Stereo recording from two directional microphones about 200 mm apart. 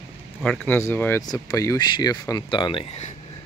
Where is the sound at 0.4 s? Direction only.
5° left (ahead or behind); by 3.1 s 25° left (ahead or behind).